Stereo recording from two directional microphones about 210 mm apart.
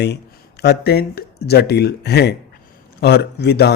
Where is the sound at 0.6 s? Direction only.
50° left (ahead or behind).